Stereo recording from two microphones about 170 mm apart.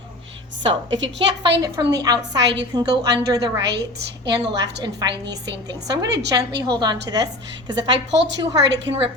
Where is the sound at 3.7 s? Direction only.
85° right.